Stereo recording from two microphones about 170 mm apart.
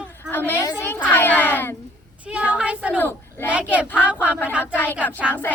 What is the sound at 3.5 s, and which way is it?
Child singing, 5° right (ahead or behind).